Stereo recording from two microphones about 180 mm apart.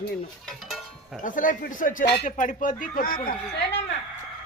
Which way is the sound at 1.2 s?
45° left (ahead or behind).